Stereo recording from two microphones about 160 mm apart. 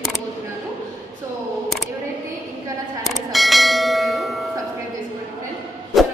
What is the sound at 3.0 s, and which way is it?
Bell, centre (ahead or behind).